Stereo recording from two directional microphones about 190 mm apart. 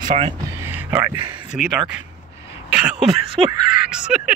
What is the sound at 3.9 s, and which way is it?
Speech, 5° right (ahead or behind).